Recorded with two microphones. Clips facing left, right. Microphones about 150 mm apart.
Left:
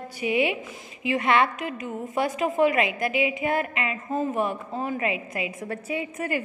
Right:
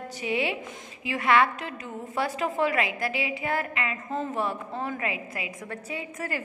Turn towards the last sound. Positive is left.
turn(degrees=20)  # may be behind; listen again after turning